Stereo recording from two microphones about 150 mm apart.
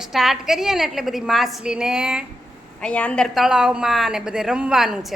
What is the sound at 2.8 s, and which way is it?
A woman's voice, 10° left (ahead or behind).